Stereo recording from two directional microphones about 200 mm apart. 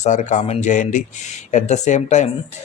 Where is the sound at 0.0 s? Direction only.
35° left (ahead or behind).